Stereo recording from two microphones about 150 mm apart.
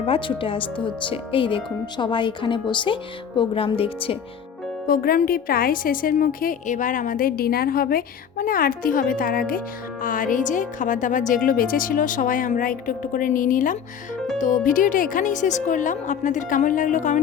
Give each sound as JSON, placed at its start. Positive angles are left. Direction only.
{"t": 0.0, "sound": "speech", "side_deg": 35}
{"t": 4.9, "sound": "a woman's voice", "side_deg": 70}